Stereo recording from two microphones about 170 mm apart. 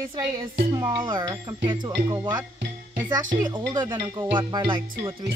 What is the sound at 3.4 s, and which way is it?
Music, 25° right (ahead or behind).